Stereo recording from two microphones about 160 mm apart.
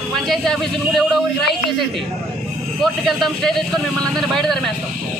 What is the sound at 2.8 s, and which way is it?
Speech, centre (ahead or behind).